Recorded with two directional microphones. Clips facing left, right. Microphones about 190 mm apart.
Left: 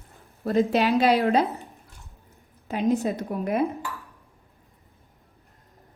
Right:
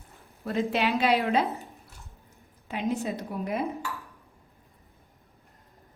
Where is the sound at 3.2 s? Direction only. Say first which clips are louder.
Left 5 dB; 55° left (ahead or behind).